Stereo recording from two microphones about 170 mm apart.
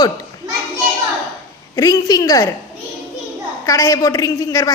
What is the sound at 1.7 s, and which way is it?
Speech, 20° left (ahead or behind).